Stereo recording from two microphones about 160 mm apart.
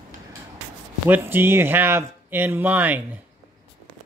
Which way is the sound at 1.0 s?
10° right (ahead or behind).